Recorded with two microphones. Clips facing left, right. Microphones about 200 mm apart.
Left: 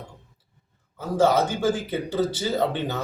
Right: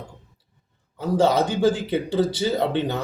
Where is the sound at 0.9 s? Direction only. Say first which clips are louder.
Right 1 dB; 15° right (ahead or behind).